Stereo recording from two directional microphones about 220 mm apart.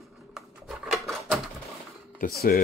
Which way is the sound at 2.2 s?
40° left (ahead or behind).